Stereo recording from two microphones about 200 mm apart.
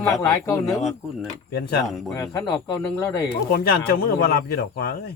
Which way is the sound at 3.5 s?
50° left (ahead or behind).